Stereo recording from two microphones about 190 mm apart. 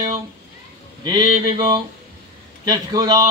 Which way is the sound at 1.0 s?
20° right (ahead or behind).